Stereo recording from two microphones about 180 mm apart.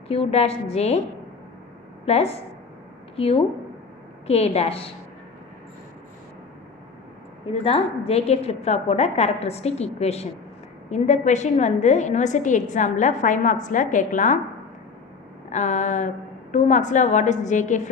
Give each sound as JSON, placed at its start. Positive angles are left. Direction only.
{"t": 0.1, "sound": "a woman's voice", "side_deg": 35}
{"t": 2.0, "sound": "a woman's voice", "side_deg": 35}
{"t": 7.6, "sound": "a woman's voice", "side_deg": 35}
{"t": 15.4, "sound": "a woman's voice", "side_deg": 40}